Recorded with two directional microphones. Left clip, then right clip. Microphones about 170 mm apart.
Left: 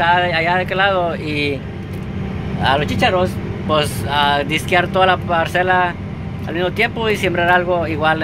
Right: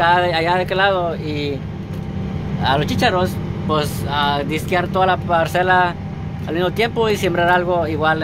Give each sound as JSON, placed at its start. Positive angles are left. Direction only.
{"t": 0.0, "sound": "speech", "side_deg": -25}
{"t": 1.0, "sound": "speech", "side_deg": 0}
{"t": 2.8, "sound": "speech", "side_deg": -25}
{"t": 3.7, "sound": "speech", "side_deg": -5}
{"t": 5.4, "sound": "speech", "side_deg": -20}